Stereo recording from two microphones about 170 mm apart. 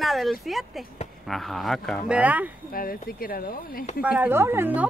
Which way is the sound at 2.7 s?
60° left (ahead or behind).